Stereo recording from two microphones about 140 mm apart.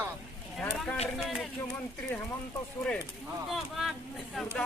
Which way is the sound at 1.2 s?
Centre (ahead or behind).